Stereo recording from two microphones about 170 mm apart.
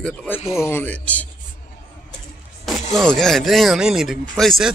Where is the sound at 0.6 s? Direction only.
10° left (ahead or behind).